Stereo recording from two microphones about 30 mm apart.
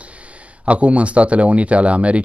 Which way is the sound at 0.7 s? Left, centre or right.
Right.